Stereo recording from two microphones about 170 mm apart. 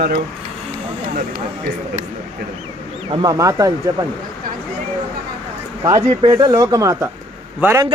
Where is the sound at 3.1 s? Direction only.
25° right (ahead or behind).